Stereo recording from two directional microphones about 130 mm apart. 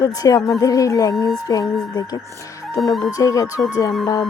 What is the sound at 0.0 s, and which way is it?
Speech, 30° left (ahead or behind).